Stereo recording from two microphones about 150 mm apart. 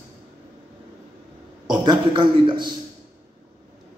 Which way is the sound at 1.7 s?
30° right (ahead or behind).